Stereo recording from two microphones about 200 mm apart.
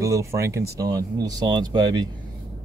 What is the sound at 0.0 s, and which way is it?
Speech, 15° right (ahead or behind).